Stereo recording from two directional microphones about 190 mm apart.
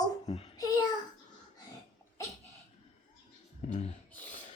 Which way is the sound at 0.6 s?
20° left (ahead or behind).